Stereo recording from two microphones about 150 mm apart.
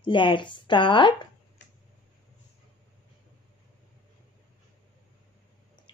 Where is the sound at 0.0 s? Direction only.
30° left (ahead or behind).